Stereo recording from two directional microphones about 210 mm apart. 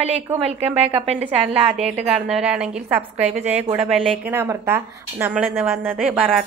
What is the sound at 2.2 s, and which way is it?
A woman's voice, 5° right (ahead or behind).